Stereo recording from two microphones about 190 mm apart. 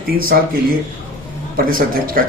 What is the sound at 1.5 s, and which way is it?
Speech, 50° right (ahead or behind).